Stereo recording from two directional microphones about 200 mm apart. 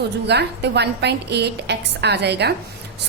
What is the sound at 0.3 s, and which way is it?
A woman's voice, 55° right (ahead or behind).